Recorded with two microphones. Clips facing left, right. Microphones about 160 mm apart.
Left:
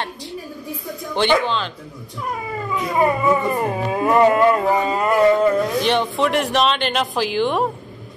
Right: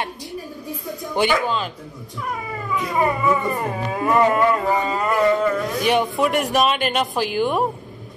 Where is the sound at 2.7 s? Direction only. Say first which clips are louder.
Left 2 dB; 25° left (ahead or behind).